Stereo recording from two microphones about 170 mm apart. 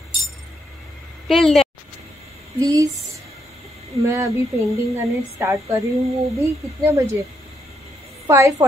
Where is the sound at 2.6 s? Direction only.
20° right (ahead or behind).